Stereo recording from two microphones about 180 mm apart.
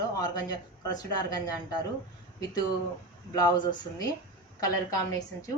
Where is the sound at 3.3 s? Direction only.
20° left (ahead or behind).